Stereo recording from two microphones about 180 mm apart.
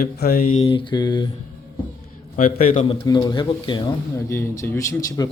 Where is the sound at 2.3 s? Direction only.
50° left (ahead or behind).